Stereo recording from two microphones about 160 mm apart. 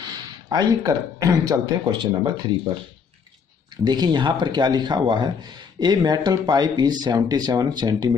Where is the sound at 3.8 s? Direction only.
25° right (ahead or behind).